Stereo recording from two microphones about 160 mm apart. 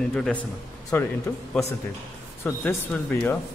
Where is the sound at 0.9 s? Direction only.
15° left (ahead or behind).